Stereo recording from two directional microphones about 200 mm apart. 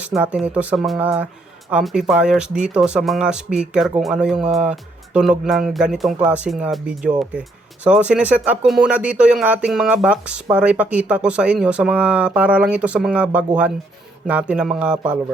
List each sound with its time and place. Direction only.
0.0 s speech: 5° right (ahead or behind)